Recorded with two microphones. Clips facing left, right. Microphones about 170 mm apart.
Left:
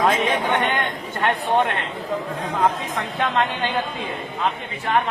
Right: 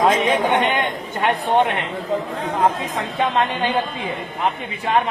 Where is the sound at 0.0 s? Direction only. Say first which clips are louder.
Right 3 dB; 15° right (ahead or behind).